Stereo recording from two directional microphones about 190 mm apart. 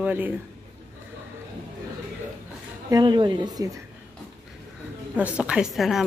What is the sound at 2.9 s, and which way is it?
Speech, 20° right (ahead or behind).